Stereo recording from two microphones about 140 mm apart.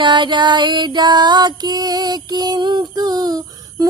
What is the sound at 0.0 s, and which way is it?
Music, 35° right (ahead or behind).